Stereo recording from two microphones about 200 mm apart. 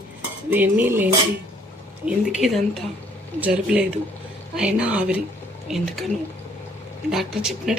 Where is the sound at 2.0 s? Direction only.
5° right (ahead or behind).